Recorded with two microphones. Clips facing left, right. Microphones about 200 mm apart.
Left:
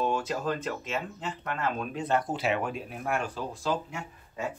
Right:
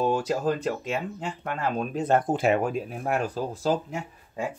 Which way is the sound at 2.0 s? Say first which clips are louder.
Right 7 dB; 50° right (ahead or behind).